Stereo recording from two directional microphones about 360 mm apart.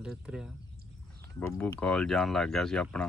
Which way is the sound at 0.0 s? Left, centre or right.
Centre.